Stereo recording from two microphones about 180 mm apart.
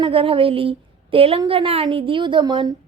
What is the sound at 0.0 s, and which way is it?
A woman's voice, 30° right (ahead or behind).